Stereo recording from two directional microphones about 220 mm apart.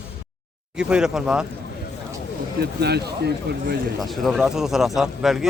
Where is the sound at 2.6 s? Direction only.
50° right (ahead or behind).